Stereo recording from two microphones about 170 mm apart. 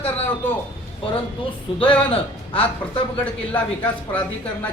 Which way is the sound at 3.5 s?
10° left (ahead or behind).